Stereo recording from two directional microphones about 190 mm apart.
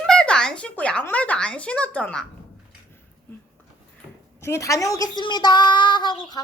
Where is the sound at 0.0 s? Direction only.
5° left (ahead or behind).